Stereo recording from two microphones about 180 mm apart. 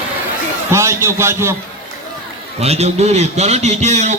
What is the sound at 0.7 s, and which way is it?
Speech, 15° right (ahead or behind).